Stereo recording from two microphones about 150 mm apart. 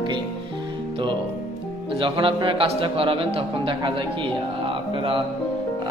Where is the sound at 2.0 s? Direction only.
35° right (ahead or behind).